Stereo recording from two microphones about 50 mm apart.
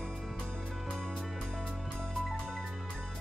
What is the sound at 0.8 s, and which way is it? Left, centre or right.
Music, centre.